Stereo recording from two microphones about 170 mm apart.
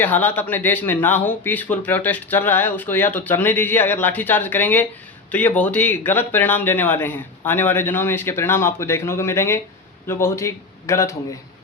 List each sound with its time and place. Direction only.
0.0 s speech: 10° left (ahead or behind)